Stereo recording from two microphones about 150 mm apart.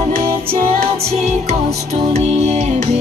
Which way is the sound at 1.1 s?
45° right (ahead or behind).